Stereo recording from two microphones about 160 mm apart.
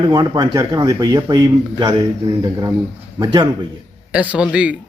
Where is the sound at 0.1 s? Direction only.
25° right (ahead or behind).